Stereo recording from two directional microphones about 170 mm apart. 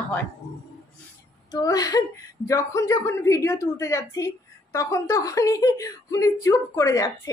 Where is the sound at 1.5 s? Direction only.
20° left (ahead or behind).